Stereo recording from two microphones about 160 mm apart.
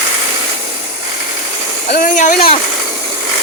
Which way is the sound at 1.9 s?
55° left (ahead or behind).